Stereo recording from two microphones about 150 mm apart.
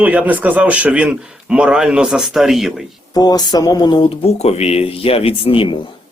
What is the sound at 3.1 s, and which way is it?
Speech, 25° left (ahead or behind).